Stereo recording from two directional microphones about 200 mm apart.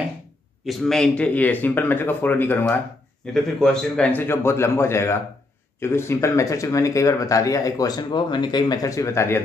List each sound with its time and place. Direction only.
0.7 s speech: centre (ahead or behind)